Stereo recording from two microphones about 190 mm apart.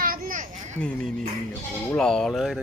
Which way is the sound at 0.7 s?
5° left (ahead or behind).